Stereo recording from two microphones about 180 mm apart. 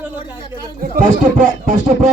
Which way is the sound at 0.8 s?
45° right (ahead or behind).